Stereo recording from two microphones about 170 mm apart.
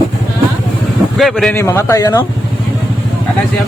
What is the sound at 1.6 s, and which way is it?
Speech, 15° left (ahead or behind).